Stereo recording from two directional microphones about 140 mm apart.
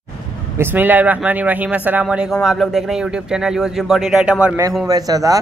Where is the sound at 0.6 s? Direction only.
15° right (ahead or behind).